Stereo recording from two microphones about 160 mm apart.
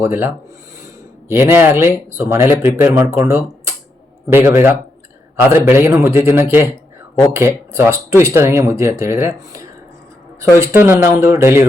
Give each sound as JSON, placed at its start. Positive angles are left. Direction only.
{"t": 0.0, "sound": "speech", "side_deg": -15}